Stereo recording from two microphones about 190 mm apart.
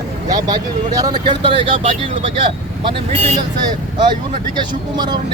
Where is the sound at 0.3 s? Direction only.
20° right (ahead or behind).